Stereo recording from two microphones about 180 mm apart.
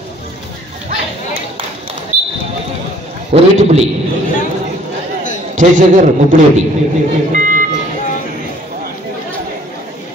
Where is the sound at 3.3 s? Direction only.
40° right (ahead or behind).